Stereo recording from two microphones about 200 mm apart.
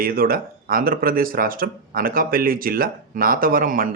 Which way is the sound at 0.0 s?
45° right (ahead or behind).